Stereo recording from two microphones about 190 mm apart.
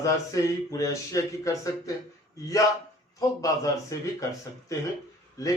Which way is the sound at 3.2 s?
15° left (ahead or behind).